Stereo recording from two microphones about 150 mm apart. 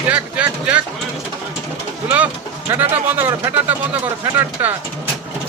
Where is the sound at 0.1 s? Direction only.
10° right (ahead or behind).